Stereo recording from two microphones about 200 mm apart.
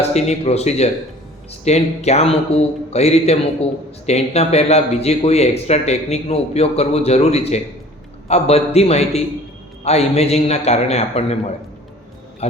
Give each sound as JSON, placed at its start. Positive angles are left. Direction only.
{"t": 0.1, "sound": "speech", "side_deg": 35}
{"t": 12.4, "sound": "speech", "side_deg": 30}